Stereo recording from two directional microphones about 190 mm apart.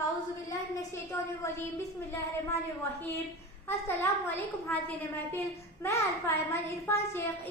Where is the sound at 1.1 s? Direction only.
15° left (ahead or behind).